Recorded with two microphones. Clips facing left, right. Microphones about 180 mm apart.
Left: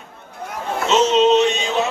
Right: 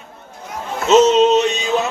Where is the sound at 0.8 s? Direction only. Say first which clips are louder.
Right 4 dB; 40° right (ahead or behind).